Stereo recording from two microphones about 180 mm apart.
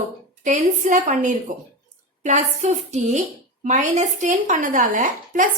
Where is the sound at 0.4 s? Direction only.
45° right (ahead or behind).